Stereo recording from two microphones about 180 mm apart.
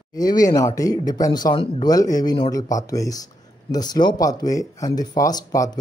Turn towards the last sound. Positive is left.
turn(degrees=20)  # may be behind; listen again after turning